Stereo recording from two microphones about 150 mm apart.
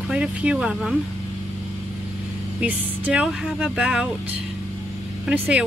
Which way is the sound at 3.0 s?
5° right (ahead or behind).